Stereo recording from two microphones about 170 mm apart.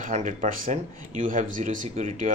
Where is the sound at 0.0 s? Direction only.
45° right (ahead or behind).